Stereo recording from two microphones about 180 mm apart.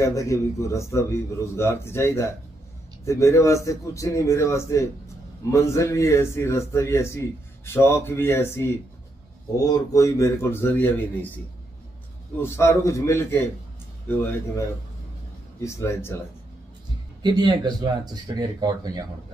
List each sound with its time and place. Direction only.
0.0 s speech: 15° left (ahead or behind)
12.4 s speech: 15° left (ahead or behind)
17.2 s speech: 25° right (ahead or behind)